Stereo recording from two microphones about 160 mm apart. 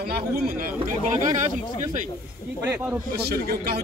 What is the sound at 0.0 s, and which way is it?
Speech, 70° right (ahead or behind).